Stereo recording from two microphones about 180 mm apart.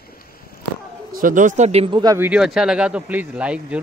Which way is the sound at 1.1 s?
45° right (ahead or behind).